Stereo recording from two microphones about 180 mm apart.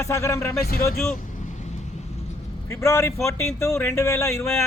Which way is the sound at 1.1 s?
40° left (ahead or behind).